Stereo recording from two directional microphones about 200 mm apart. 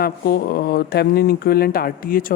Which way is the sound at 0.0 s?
50° left (ahead or behind).